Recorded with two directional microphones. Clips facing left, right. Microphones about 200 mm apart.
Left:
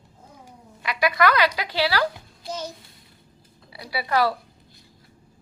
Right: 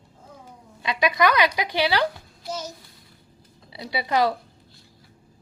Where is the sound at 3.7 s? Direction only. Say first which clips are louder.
Even; 20° right (ahead or behind).